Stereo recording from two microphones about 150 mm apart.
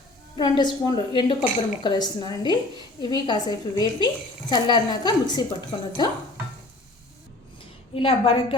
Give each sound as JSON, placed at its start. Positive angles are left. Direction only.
{"t": 0.5, "sound": "a woman's voice", "side_deg": 30}
{"t": 7.9, "sound": "a woman's voice", "side_deg": 35}